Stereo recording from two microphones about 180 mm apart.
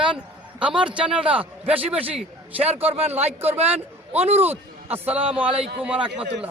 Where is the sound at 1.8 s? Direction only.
30° right (ahead or behind).